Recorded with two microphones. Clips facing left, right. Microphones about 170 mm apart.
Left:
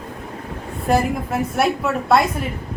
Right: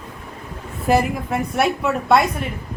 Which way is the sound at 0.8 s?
Centre (ahead or behind).